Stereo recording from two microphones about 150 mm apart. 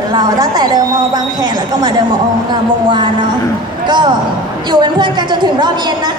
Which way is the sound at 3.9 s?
30° right (ahead or behind).